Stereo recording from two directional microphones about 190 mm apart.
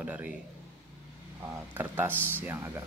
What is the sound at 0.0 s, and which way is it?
Speech, 10° right (ahead or behind).